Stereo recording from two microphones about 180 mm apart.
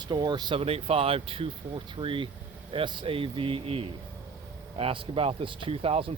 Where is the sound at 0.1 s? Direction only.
25° right (ahead or behind).